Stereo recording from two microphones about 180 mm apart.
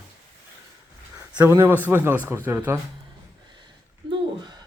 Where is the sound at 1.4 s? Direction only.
10° right (ahead or behind).